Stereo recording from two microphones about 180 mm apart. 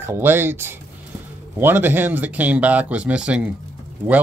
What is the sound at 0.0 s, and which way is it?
Speech, 10° right (ahead or behind).